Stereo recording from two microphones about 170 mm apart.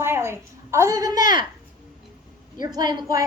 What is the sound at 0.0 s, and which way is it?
A woman's voice, 15° right (ahead or behind).